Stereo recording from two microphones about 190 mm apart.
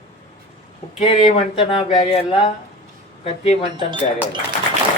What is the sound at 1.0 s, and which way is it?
Speech, 30° left (ahead or behind).